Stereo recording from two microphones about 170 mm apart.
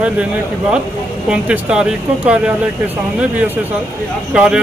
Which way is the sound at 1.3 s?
5° right (ahead or behind).